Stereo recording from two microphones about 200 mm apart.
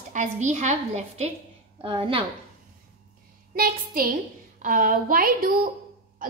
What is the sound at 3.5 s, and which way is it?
A woman's voice, 45° right (ahead or behind).